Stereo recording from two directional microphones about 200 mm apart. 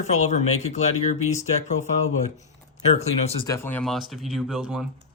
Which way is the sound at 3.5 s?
10° left (ahead or behind).